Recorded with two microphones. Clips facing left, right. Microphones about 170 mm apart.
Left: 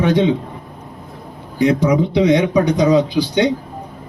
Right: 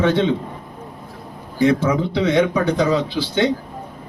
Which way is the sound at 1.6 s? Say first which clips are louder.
Left 2 dB; 20° left (ahead or behind).